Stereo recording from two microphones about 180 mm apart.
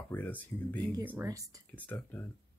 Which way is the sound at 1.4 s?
10° left (ahead or behind).